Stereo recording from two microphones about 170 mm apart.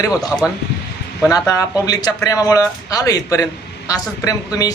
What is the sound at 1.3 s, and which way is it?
Speech, 20° left (ahead or behind).